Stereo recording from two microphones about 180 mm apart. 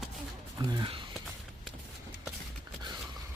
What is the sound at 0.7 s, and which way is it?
Speech, 30° right (ahead or behind).